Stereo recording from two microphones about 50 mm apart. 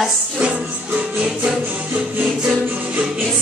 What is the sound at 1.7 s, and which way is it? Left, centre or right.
Music, right.